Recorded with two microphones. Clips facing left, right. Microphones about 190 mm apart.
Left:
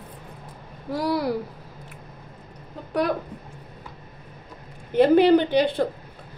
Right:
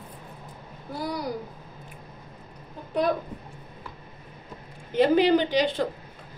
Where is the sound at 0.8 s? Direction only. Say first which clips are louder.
Left 7 dB; 80° left.